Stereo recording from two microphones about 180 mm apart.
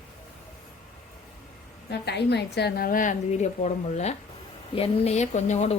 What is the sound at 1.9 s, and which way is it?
A woman's voice, 70° left (ahead or behind).